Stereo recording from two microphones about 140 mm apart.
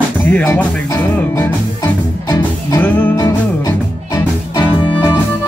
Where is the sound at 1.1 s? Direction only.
20° left (ahead or behind).